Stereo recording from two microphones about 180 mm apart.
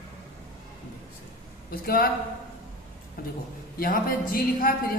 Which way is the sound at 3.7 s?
55° left (ahead or behind).